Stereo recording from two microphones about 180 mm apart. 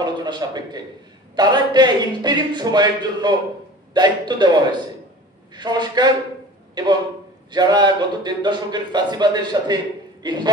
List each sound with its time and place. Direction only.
0.0 s a man's voice: 25° right (ahead or behind)